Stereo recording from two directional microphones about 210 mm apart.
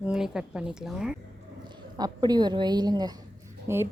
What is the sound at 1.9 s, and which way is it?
A woman's voice, 20° right (ahead or behind).